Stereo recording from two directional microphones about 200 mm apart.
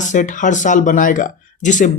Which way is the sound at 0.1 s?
40° left (ahead or behind).